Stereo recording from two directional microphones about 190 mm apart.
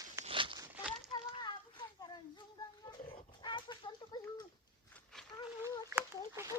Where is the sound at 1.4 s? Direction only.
25° left (ahead or behind).